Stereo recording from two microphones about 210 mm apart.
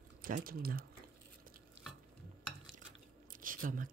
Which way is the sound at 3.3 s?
40° right (ahead or behind).